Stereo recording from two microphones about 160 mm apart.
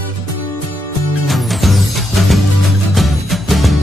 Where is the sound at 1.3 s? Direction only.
Centre (ahead or behind).